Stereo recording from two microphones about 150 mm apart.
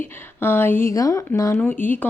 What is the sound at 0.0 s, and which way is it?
Speech, 15° left (ahead or behind).